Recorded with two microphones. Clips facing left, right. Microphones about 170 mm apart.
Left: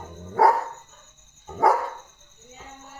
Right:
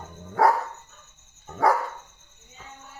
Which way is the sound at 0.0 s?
5° left (ahead or behind).